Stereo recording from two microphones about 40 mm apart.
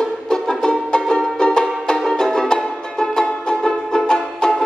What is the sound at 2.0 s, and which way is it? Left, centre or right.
Music, centre.